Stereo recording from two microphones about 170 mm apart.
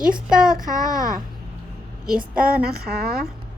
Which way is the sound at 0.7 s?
20° left (ahead or behind).